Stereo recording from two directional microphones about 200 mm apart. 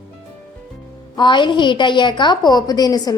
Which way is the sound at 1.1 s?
25° left (ahead or behind).